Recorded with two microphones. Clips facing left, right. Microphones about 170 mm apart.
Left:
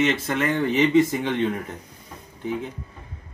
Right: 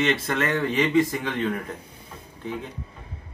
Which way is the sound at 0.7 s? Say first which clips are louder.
Left 4 dB; 25° left (ahead or behind).